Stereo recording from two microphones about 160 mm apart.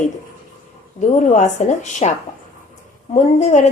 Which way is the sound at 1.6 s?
45° left (ahead or behind).